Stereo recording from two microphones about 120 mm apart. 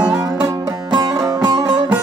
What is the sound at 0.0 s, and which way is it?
Music, 35° right (ahead or behind).